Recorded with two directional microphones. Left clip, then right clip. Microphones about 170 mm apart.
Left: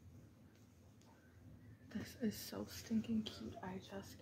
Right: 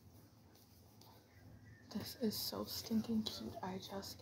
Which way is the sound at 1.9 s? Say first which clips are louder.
Right 3 dB; 25° left (ahead or behind).